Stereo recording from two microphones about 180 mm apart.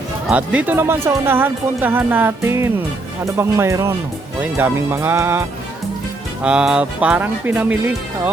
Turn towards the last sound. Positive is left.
turn(degrees=-10)  # may be behind; listen again after turning